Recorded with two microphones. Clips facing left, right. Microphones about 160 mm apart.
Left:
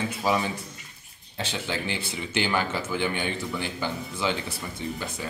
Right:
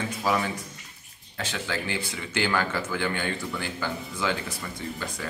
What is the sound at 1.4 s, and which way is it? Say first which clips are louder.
Speech: left 1 dB; 25° left (ahead or behind).